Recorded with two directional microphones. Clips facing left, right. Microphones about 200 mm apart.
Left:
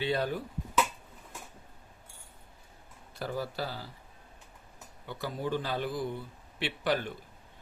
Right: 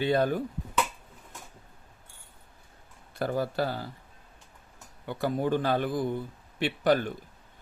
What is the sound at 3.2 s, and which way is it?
Speech, 55° right (ahead or behind).